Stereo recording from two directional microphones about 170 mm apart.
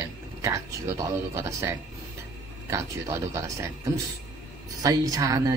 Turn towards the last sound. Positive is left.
turn(degrees=-20)  # may be behind; listen again after turning